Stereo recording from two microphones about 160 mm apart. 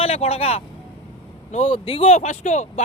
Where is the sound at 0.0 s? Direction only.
40° left (ahead or behind).